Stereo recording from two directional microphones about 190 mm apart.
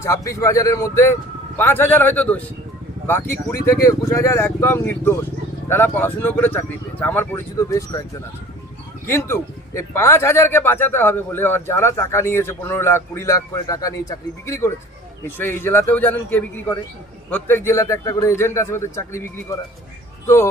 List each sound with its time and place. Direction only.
0.0 s speech: 15° left (ahead or behind)
9.0 s speech: 15° left (ahead or behind)